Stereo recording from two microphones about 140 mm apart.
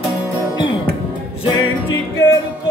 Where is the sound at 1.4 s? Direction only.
25° left (ahead or behind).